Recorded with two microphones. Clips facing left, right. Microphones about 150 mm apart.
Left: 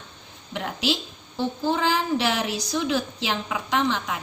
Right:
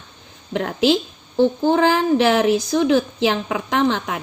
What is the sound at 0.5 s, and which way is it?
A woman's voice, 50° right (ahead or behind).